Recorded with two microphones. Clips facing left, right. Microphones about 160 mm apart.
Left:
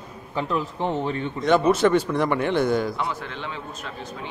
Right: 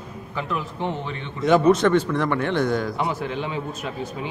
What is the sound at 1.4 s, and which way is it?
A man's voice, 5° left (ahead or behind).